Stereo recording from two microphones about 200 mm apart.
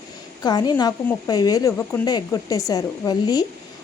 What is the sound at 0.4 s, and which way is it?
A woman's voice, 20° left (ahead or behind).